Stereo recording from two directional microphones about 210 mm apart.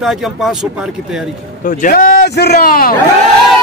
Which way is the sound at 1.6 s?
40° left (ahead or behind).